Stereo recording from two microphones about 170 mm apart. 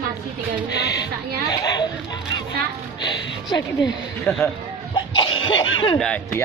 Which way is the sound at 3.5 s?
25° left (ahead or behind).